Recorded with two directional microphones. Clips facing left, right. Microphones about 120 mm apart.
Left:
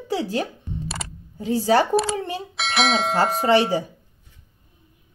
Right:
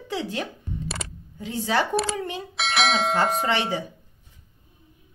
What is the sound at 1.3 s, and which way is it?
Speech, 35° left (ahead or behind).